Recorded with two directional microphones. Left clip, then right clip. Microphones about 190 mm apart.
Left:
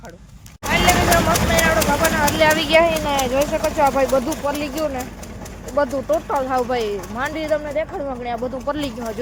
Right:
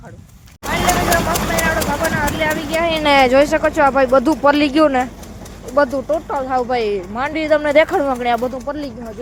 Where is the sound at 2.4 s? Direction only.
50° left (ahead or behind).